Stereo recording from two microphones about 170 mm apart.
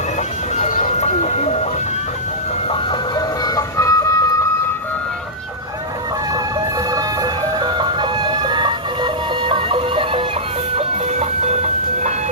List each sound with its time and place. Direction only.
0.5 s music: 45° left (ahead or behind)
3.2 s music: 20° left (ahead or behind)
6.9 s music: 25° right (ahead or behind)
10.8 s music: 40° right (ahead or behind)